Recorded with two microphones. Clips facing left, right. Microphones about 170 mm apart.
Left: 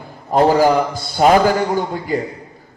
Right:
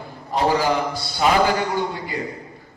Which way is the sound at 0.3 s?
45° left (ahead or behind).